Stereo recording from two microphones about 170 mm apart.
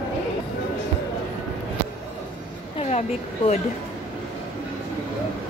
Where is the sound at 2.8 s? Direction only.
40° left (ahead or behind).